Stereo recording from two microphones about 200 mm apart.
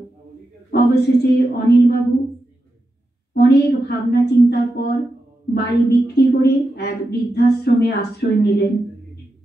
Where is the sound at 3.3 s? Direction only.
55° left (ahead or behind).